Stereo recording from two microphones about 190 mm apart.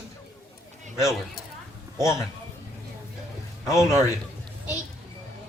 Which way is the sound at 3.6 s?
Centre (ahead or behind).